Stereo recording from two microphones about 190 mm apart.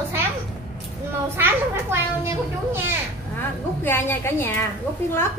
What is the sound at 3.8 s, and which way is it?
Speech, 10° left (ahead or behind).